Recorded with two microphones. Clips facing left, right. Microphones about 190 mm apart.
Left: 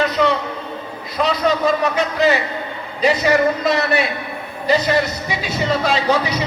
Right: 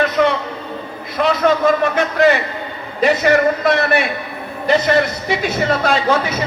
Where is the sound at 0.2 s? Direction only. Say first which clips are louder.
Right 2 dB; 55° right (ahead or behind).